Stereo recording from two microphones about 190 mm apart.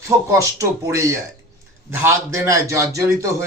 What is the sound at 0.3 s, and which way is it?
A man's voice, 15° right (ahead or behind).